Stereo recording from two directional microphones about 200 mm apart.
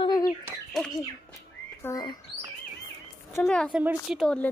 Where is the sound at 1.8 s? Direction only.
15° left (ahead or behind).